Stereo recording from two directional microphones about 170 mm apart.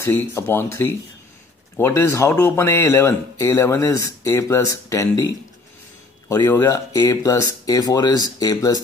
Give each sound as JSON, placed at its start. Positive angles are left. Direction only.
{"t": 0.0, "sound": "speech", "side_deg": 15}